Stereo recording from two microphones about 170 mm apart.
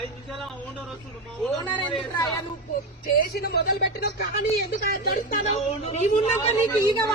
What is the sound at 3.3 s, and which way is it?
Speech, 70° left (ahead or behind).